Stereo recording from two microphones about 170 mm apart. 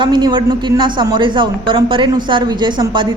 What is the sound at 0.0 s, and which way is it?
A man's voice, 25° right (ahead or behind).